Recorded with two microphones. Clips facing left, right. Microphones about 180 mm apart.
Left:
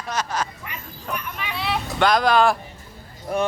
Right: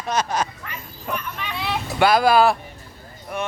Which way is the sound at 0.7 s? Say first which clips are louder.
Right 2 dB; 10° left (ahead or behind).